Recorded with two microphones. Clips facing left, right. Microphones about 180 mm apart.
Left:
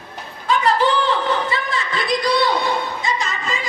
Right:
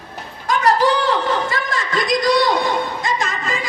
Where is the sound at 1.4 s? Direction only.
45° right (ahead or behind).